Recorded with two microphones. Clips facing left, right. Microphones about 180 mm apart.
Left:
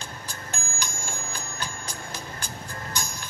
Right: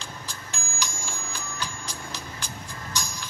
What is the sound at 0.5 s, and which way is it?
Bicycle bell, 55° left (ahead or behind).